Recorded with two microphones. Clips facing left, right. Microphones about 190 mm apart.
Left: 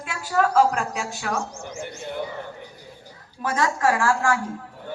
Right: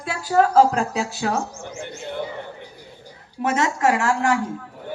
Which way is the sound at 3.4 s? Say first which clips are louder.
Right 2 dB; 25° right (ahead or behind).